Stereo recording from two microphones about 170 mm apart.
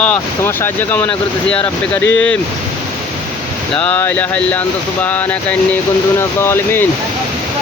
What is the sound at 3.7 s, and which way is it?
Speech, 10° left (ahead or behind).